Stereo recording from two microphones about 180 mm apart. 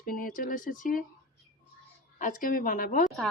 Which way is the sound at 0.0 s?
55° left (ahead or behind).